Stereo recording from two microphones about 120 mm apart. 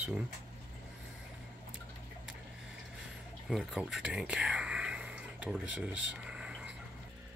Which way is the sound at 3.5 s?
Centre (ahead or behind).